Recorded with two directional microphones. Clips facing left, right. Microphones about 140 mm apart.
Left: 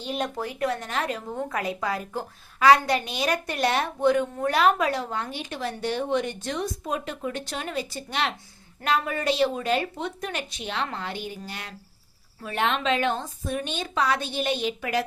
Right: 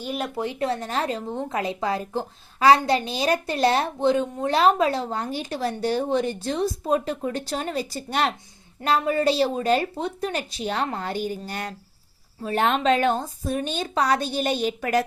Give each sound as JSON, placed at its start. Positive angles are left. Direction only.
{"t": 0.0, "sound": "speech", "side_deg": -5}
{"t": 0.3, "sound": "a woman's voice", "side_deg": -25}